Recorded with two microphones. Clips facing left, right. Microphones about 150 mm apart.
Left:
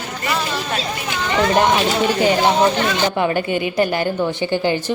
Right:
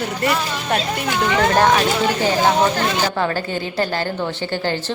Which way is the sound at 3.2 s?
15° left (ahead or behind).